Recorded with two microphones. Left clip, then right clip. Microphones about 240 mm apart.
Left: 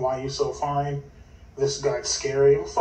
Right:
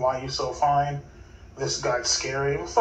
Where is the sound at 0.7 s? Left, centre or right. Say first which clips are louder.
Right 4 dB; right.